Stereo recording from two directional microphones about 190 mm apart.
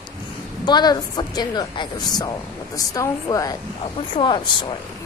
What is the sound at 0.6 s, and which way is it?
A woman's voice, 20° left (ahead or behind).